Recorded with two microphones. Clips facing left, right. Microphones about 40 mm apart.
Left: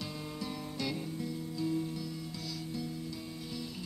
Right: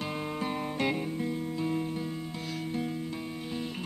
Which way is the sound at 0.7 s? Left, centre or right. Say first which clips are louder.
Right 5 dB; right.